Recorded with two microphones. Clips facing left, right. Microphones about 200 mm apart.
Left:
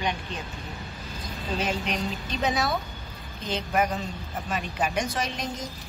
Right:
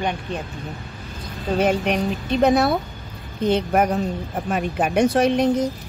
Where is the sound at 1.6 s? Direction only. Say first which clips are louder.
Right 10 dB; 55° right (ahead or behind).